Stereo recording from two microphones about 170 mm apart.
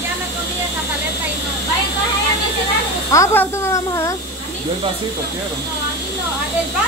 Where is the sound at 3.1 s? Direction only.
15° left (ahead or behind).